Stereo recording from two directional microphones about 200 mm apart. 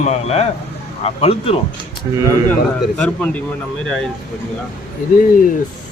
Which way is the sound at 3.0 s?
5° left (ahead or behind).